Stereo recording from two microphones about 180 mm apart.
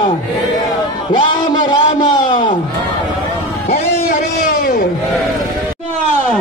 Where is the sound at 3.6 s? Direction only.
35° left (ahead or behind).